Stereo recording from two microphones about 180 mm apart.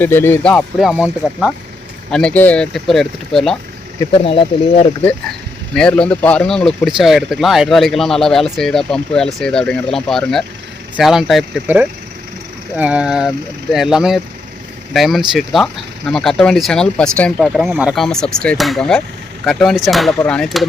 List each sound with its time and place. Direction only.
0.0 s speech: 10° left (ahead or behind)
4.2 s speech: 30° left (ahead or behind)
5.7 s speech: 5° left (ahead or behind)
12.7 s speech: 5° right (ahead or behind)